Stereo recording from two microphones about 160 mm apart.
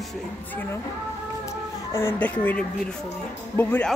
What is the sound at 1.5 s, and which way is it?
Speech, 15° left (ahead or behind).